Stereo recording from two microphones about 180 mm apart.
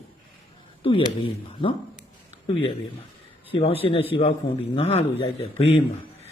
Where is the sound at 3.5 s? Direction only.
30° left (ahead or behind).